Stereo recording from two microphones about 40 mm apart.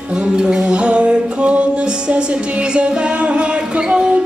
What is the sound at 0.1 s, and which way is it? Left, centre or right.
Music, centre.